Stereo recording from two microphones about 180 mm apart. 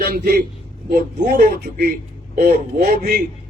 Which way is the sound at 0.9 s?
55° right (ahead or behind).